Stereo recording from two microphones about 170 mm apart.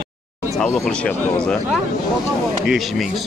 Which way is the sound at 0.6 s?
5° left (ahead or behind).